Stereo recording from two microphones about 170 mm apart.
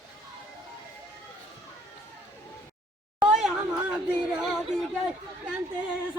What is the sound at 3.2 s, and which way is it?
Chatter, 5° right (ahead or behind).